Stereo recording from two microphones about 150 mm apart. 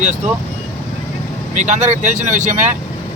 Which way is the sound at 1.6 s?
55° right (ahead or behind).